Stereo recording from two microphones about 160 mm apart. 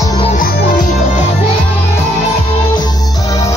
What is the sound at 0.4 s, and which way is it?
Music, 70° left (ahead or behind).